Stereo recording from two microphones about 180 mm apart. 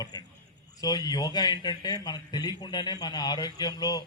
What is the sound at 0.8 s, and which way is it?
A man's voice, 20° left (ahead or behind).